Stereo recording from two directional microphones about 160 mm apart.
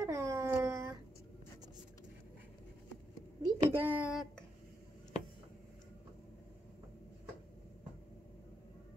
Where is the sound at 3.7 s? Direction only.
5° right (ahead or behind).